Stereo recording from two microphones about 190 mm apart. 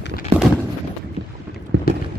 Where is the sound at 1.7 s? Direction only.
70° right (ahead or behind).